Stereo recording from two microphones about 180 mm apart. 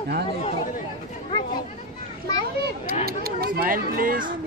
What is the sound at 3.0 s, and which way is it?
Speech, 55° right (ahead or behind).